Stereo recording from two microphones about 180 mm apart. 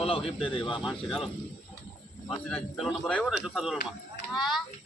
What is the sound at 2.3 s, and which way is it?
Speech, 5° left (ahead or behind).